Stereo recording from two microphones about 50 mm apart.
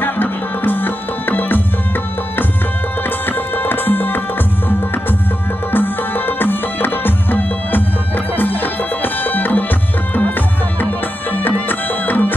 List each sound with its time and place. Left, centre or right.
0.0 s music: left
3.3 s music: left
5.7 s music: left
11.3 s music: left